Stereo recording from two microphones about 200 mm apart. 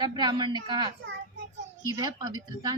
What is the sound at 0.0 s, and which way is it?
A woman's voice, 20° right (ahead or behind).